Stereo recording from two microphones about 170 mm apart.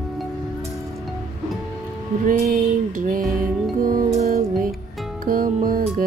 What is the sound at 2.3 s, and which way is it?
Music, 55° right (ahead or behind).